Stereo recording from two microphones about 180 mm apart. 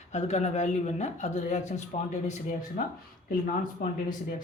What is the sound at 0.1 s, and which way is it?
A woman's voice, 40° left (ahead or behind).